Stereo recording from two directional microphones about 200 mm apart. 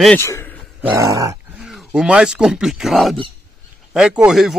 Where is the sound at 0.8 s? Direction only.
15° right (ahead or behind).